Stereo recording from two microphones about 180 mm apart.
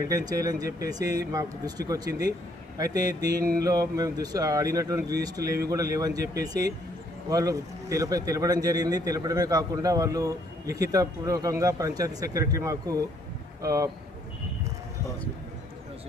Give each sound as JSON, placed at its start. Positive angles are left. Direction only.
{"t": 0.1, "sound": "speech", "side_deg": -20}